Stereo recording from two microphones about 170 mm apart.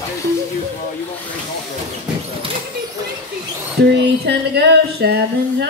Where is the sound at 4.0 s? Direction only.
75° right (ahead or behind).